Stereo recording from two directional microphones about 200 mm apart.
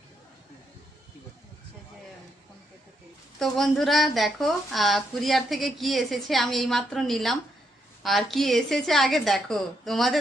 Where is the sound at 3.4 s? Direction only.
Centre (ahead or behind).